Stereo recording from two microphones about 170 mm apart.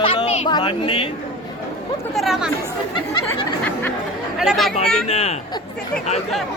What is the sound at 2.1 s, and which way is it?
Speech, centre (ahead or behind).